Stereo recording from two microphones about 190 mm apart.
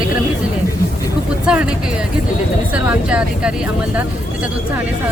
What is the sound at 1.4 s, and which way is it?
Speech, 5° right (ahead or behind).